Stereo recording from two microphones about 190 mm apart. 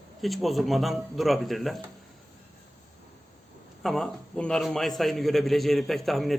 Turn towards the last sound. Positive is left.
turn(degrees=0)  # may be behind; listen again after turning